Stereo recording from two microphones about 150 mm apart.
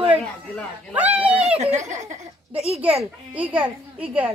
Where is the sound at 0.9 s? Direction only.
10° right (ahead or behind).